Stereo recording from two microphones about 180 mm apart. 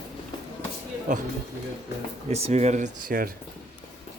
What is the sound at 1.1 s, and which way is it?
Speech, 40° right (ahead or behind).